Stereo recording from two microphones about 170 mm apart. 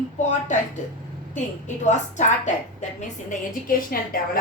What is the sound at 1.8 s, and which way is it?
Speech, 45° left (ahead or behind).